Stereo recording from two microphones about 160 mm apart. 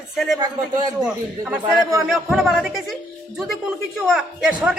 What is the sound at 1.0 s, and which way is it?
A man's voice, 5° right (ahead or behind).